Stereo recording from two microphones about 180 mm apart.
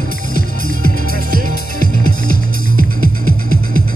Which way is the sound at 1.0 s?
50° right (ahead or behind).